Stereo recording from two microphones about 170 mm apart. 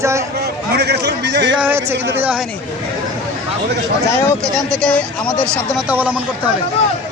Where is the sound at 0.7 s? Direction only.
75° right (ahead or behind).